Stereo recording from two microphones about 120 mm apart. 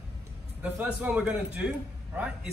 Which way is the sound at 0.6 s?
15° right (ahead or behind).